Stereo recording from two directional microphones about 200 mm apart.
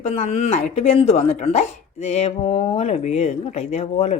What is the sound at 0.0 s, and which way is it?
Speech, 35° left (ahead or behind).